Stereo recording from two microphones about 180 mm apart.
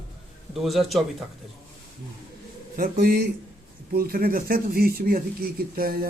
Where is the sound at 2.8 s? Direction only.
55° right (ahead or behind).